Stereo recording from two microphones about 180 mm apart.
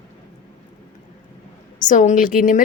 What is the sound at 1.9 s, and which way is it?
Speech, 45° left (ahead or behind).